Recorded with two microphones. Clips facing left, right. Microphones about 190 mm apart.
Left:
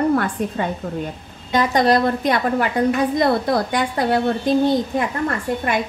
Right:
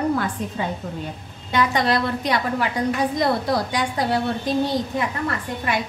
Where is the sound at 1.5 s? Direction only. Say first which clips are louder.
Left 4 dB; 40° left (ahead or behind).